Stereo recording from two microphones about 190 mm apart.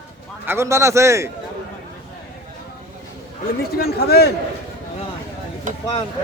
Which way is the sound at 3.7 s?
55° left (ahead or behind).